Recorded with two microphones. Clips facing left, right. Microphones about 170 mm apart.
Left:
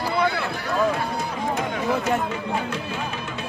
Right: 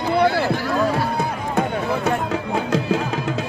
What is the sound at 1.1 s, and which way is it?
Music, 60° right (ahead or behind).